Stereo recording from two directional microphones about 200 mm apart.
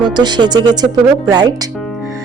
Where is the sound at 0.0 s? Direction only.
20° right (ahead or behind).